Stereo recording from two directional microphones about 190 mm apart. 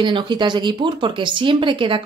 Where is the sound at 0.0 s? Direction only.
25° right (ahead or behind).